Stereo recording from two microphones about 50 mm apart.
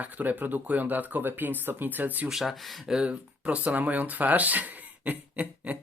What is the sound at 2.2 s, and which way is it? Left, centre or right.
Speech, centre.